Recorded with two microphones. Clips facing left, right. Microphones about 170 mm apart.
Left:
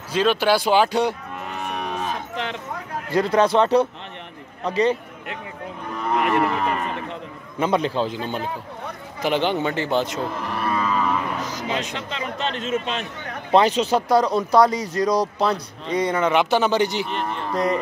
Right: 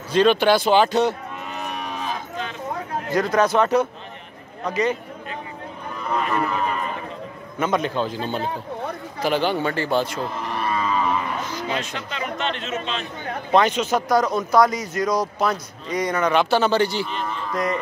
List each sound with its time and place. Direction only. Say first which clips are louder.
0.1 s speech: right 3 dB; 5° left (ahead or behind)
1.7 s cattle: left 3 dB; 60° left (ahead or behind)
3.1 s speech: left 1 dB; 30° left (ahead or behind)
6.1 s speech: left 3 dB; 70° left (ahead or behind)
7.5 s speech: left 1 dB; 30° left (ahead or behind)
9.2 s speech: even; 20° left (ahead or behind)
11.3 s music: even; 40° left (ahead or behind)
11.7 s speech: left 1 dB; 20° left (ahead or behind); by 13.0 s 50° left (ahead or behind)
13.5 s speech: left 2 dB; 30° left (ahead or behind)
17.1 s speech: left 2 dB; 60° left (ahead or behind)
17.5 s speech: left 3 dB; 35° left (ahead or behind)